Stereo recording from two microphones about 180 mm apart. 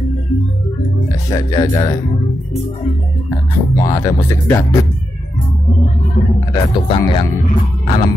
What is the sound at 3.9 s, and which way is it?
Speech, 15° left (ahead or behind).